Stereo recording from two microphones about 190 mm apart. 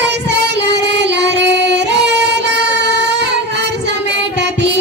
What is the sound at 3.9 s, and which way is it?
Music, 65° right (ahead or behind).